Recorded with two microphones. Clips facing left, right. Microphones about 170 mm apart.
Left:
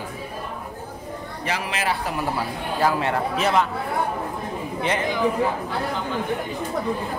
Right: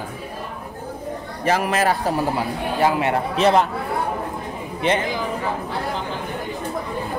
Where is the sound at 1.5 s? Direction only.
45° right (ahead or behind).